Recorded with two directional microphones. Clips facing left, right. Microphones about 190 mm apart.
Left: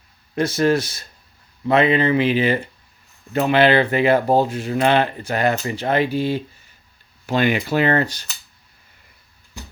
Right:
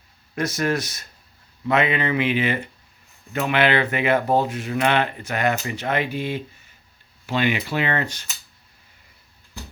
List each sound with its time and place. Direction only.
0.3 s speech: 30° left (ahead or behind)
7.3 s speech: 45° left (ahead or behind)